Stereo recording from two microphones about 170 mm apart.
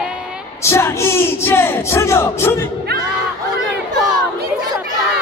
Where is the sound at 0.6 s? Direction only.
15° left (ahead or behind).